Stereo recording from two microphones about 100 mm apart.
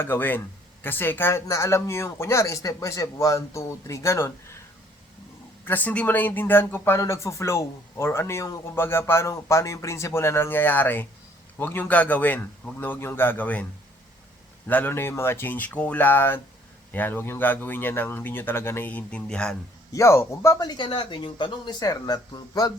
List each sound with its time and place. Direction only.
0.0 s speech: 20° left (ahead or behind)
5.6 s a man's voice: 15° left (ahead or behind)
14.7 s speech: 20° left (ahead or behind)
19.9 s speech: 30° left (ahead or behind)
20.7 s speech: 55° left (ahead or behind)